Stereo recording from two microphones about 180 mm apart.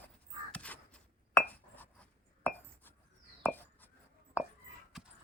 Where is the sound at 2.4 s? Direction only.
10° left (ahead or behind).